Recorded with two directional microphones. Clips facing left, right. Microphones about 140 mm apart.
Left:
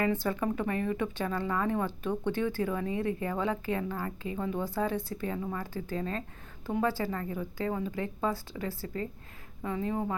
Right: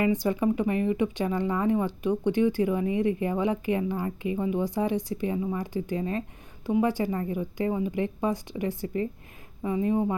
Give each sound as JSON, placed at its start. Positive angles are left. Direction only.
{"t": 0.0, "sound": "speech", "side_deg": -15}